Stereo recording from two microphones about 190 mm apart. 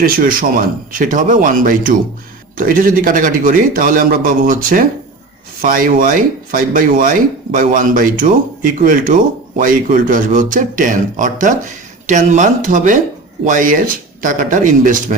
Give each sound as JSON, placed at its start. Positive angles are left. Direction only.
{"t": 0.0, "sound": "speech", "side_deg": -50}